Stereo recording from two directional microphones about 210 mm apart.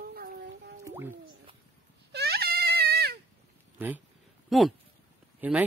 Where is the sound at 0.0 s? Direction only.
45° right (ahead or behind).